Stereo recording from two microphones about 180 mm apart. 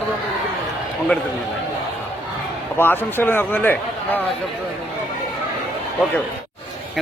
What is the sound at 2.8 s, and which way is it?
Speech, 10° left (ahead or behind).